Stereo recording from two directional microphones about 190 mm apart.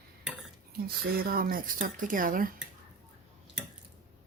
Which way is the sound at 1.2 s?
50° right (ahead or behind).